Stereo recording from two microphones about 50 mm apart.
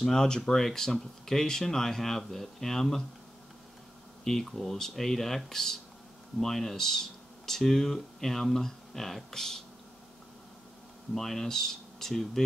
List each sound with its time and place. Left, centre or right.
0.0 s speech: centre
4.2 s speech: centre
11.1 s speech: centre